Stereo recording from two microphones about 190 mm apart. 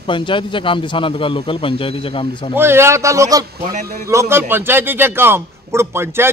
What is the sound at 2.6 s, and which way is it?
Speech, 10° right (ahead or behind).